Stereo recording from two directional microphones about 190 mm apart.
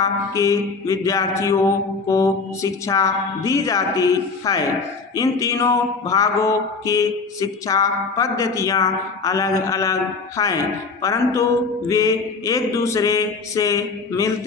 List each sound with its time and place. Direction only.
0.0 s mantra: 15° left (ahead or behind)